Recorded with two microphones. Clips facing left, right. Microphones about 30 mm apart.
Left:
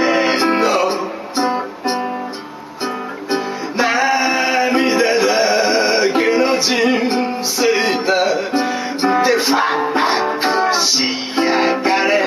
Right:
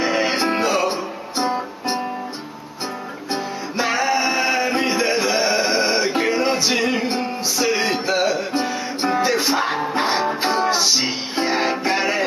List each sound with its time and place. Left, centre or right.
0.0 s music: centre
3.3 s music: centre